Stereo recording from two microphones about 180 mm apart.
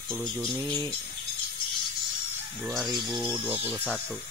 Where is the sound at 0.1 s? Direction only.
Centre (ahead or behind).